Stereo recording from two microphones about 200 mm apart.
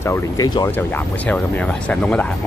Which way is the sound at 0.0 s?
15° left (ahead or behind).